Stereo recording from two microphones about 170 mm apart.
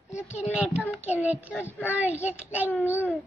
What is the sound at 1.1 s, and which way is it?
A child's voice, 10° right (ahead or behind).